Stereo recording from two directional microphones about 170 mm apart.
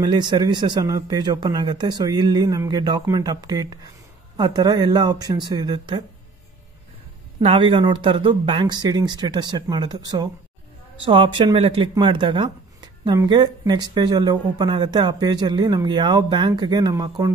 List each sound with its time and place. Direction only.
0.0 s speech: 25° right (ahead or behind)
7.3 s speech: 30° right (ahead or behind)